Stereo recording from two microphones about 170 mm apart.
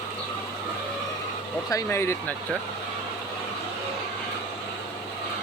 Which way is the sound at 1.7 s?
15° left (ahead or behind).